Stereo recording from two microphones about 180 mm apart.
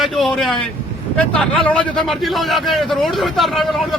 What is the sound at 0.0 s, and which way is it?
A man's voice, centre (ahead or behind).